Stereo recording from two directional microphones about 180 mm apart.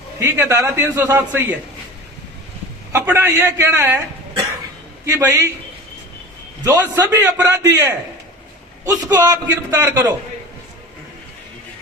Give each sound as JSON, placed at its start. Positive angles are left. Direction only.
{"t": 0.2, "sound": "a man's voice", "side_deg": -15}
{"t": 2.9, "sound": "a man's voice", "side_deg": -15}
{"t": 5.0, "sound": "a man's voice", "side_deg": -15}
{"t": 6.7, "sound": "a man's voice", "side_deg": -15}